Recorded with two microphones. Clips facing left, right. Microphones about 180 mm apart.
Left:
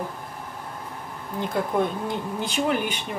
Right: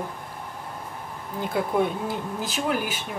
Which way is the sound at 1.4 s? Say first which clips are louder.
Even; 5° right (ahead or behind).